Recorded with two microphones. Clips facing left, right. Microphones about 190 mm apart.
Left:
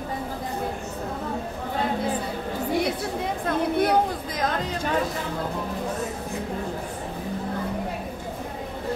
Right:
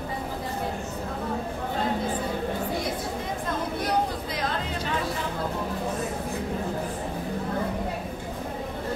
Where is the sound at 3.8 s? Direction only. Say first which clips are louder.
Left 4 dB; 55° left (ahead or behind).